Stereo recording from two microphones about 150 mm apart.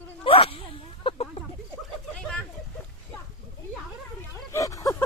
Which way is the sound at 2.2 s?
5° left (ahead or behind).